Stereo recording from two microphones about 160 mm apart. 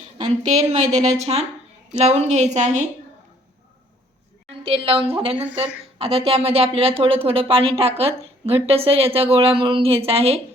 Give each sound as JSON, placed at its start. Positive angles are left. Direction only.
{"t": 0.3, "sound": "a woman's voice", "side_deg": -45}
{"t": 4.6, "sound": "speech", "side_deg": -35}